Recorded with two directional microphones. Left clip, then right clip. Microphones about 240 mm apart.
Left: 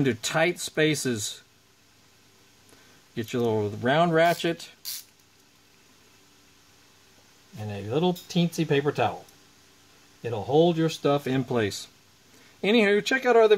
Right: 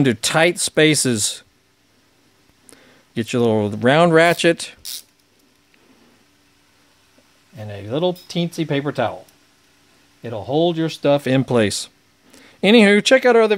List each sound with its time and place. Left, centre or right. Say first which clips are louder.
0.0 s speech: right 8 dB; right
3.2 s speech: right 8 dB; right
7.6 s speech: right 5 dB; right
10.2 s speech: right 3 dB; right